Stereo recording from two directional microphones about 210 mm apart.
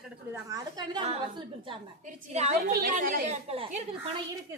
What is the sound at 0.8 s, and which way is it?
Speech, 25° right (ahead or behind).